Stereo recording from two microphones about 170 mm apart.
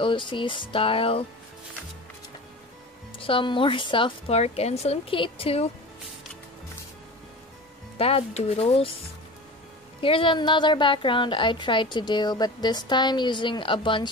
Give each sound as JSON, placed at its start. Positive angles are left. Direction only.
{"t": 0.0, "sound": "a woman's voice", "side_deg": 30}
{"t": 3.2, "sound": "a woman's voice", "side_deg": 30}
{"t": 8.0, "sound": "a woman's voice", "side_deg": 35}
{"t": 10.0, "sound": "a woman's voice", "side_deg": 30}